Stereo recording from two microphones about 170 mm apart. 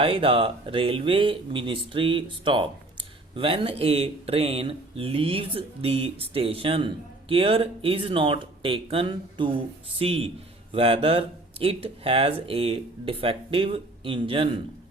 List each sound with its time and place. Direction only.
0.0 s speech: 35° right (ahead or behind)